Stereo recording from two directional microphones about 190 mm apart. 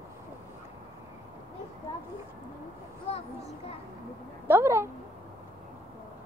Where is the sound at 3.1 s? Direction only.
35° left (ahead or behind).